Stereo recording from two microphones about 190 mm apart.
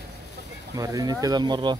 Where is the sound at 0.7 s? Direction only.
20° right (ahead or behind).